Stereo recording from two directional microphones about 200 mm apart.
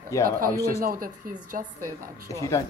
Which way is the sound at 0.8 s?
45° right (ahead or behind).